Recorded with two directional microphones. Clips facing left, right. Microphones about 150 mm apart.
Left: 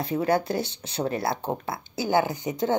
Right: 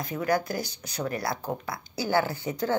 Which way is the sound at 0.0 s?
30° left (ahead or behind).